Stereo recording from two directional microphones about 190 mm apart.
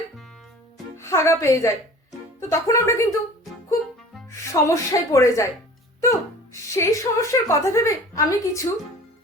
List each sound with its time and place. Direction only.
0.9 s speech: 15° left (ahead or behind)
4.3 s speech: 15° left (ahead or behind)